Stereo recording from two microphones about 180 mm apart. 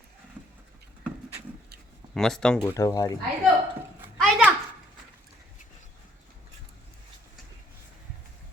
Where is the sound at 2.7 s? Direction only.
20° left (ahead or behind).